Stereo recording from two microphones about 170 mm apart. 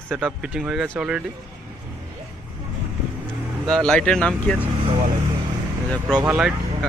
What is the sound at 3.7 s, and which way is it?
Speech, 5° left (ahead or behind).